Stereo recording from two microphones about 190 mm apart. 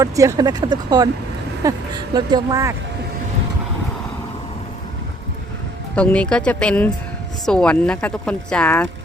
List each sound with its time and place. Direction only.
0.0 s speech: 20° right (ahead or behind)
6.0 s a woman's voice: 5° left (ahead or behind)